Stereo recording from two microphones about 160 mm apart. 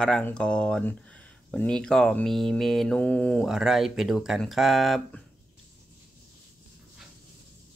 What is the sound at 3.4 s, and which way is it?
Speech, 5° right (ahead or behind).